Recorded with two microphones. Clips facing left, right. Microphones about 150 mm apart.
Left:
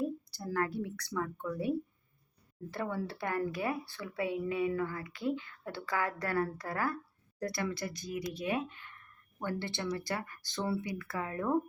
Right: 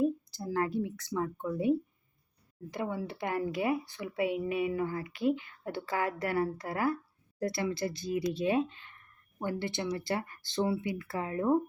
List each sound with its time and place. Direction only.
0.0 s a woman's voice: 20° right (ahead or behind)